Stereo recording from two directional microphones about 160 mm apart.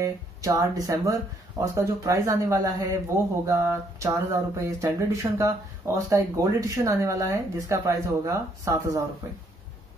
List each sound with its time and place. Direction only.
0.0 s speech: 20° right (ahead or behind)